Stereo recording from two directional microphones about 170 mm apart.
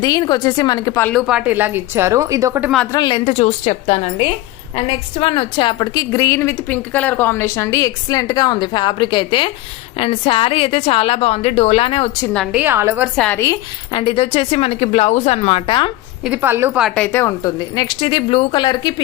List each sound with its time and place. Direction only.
0.0 s a woman's voice: 25° left (ahead or behind)
1.0 s a woman's voice: centre (ahead or behind); by 2.6 s 15° right (ahead or behind)
2.9 s a woman's voice: 25° left (ahead or behind)
12.3 s a woman's voice: 5° left (ahead or behind)
12.5 s a woman's voice: 15° right (ahead or behind)
13.1 s a woman's voice: 5° left (ahead or behind)
13.9 s a woman's voice: 30° left (ahead or behind)
16.2 s a woman's voice: 10° right (ahead or behind)
16.8 s a woman's voice: 5° left (ahead or behind); by 18.9 s 25° left (ahead or behind)